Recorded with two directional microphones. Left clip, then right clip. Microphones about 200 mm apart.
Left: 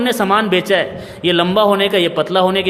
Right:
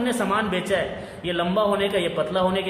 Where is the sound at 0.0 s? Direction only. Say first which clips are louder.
Left 9 dB; 40° left (ahead or behind).